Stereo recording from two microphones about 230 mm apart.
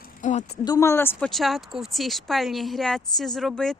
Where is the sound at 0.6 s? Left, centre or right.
Centre.